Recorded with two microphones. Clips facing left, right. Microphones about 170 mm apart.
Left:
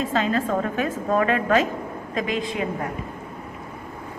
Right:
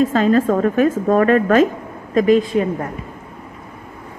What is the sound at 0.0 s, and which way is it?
A woman's voice, 45° right (ahead or behind).